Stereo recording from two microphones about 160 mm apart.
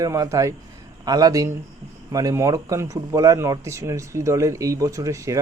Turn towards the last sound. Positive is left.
turn(degrees=-20)  # may be behind; listen again after turning